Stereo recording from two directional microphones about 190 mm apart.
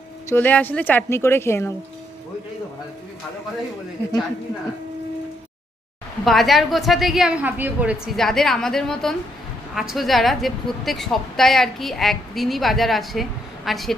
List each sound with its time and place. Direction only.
0.3 s a woman's voice: 10° left (ahead or behind)
6.2 s a woman's voice: centre (ahead or behind)